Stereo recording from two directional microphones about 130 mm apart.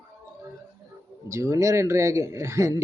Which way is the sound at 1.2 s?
25° right (ahead or behind).